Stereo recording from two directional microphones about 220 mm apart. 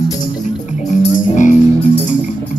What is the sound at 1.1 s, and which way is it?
Music, 35° left (ahead or behind).